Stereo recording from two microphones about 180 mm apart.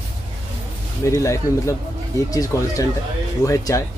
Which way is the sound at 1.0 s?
15° left (ahead or behind).